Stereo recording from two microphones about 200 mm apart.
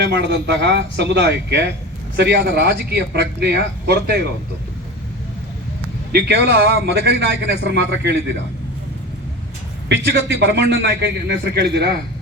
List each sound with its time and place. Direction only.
0.1 s speech: 60° right (ahead or behind)
6.1 s speech: 55° right (ahead or behind)
9.9 s speech: 60° right (ahead or behind)